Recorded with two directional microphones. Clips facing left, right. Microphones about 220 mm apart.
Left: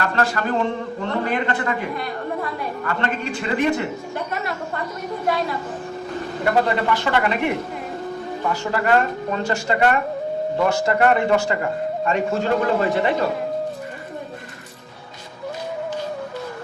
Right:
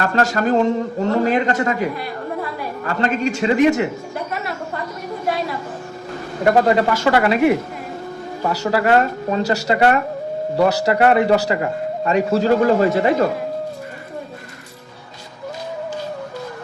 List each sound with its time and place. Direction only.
0.0 s speech: 40° right (ahead or behind)
2.8 s speech: 35° right (ahead or behind)
6.4 s speech: 40° right (ahead or behind)
8.5 s speech: 35° right (ahead or behind)